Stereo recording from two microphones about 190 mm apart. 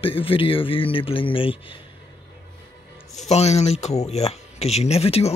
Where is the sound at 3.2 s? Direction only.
35° left (ahead or behind).